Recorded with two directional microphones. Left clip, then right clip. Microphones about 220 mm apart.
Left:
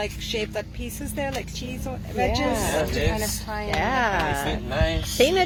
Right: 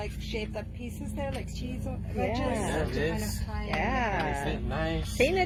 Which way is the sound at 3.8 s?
15° left (ahead or behind).